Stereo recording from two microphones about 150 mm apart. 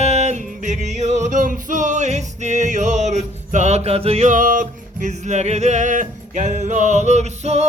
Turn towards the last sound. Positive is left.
turn(degrees=-50)  # may be behind; listen again after turning